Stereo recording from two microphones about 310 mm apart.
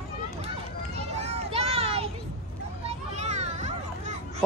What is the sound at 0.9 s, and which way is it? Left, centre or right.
Children playing, centre.